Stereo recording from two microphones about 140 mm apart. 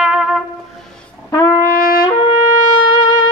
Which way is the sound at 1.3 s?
15° left (ahead or behind).